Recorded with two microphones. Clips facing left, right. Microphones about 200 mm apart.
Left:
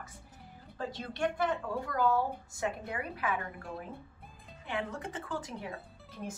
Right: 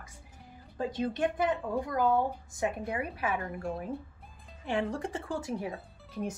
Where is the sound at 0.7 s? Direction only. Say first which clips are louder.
Right 6 dB; 15° right (ahead or behind).